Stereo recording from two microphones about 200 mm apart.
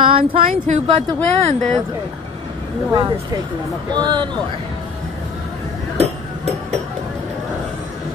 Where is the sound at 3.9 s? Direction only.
20° right (ahead or behind).